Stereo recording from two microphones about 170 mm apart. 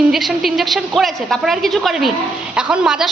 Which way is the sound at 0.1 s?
Centre (ahead or behind).